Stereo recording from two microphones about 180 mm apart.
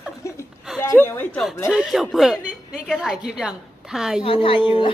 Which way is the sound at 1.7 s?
5° right (ahead or behind).